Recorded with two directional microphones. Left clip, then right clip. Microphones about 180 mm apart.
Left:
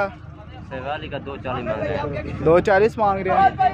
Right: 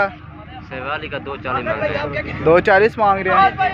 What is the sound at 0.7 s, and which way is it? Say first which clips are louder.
Speech: right 3 dB; 40° left (ahead or behind).